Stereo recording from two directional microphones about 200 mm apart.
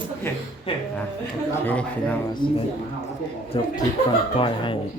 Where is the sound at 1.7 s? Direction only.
10° left (ahead or behind).